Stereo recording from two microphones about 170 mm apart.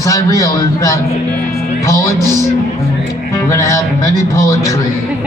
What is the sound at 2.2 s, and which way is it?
Music, 20° right (ahead or behind).